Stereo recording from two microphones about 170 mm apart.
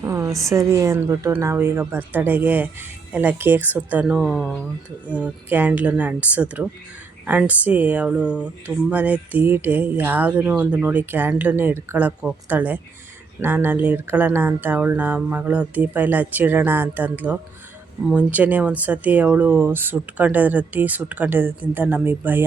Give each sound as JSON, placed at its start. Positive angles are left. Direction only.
{"t": 0.0, "sound": "a sound", "side_deg": -20}
{"t": 0.4, "sound": "speech", "side_deg": -15}
{"t": 5.1, "sound": "speech", "side_deg": -10}